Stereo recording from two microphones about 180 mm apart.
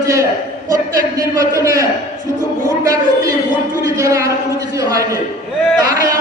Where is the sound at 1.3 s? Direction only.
15° right (ahead or behind).